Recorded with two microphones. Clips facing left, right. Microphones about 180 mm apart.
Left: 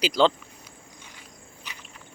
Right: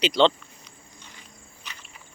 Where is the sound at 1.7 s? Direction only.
10° left (ahead or behind).